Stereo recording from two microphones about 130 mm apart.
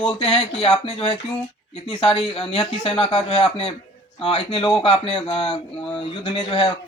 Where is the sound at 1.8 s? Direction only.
40° left (ahead or behind).